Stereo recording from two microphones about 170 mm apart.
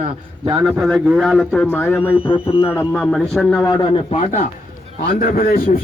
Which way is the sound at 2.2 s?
30° left (ahead or behind).